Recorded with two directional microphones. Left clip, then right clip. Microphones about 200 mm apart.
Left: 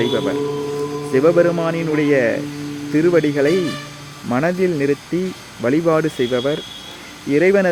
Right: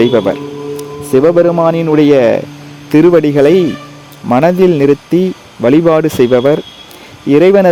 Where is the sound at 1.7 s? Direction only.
45° right (ahead or behind).